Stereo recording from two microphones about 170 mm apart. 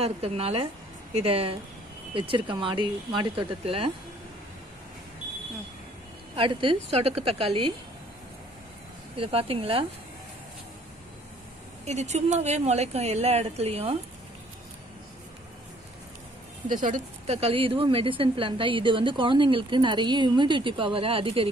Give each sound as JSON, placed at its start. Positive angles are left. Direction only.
{"t": 0.0, "sound": "a woman's voice", "side_deg": -35}
{"t": 6.3, "sound": "a woman's voice", "side_deg": -30}
{"t": 9.1, "sound": "a woman's voice", "side_deg": -35}
{"t": 11.8, "sound": "a woman's voice", "side_deg": -40}
{"t": 16.6, "sound": "a woman's voice", "side_deg": -50}